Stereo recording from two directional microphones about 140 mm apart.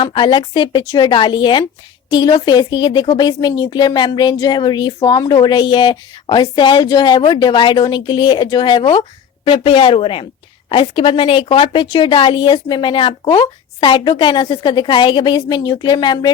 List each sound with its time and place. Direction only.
0.0 s speech: 35° left (ahead or behind)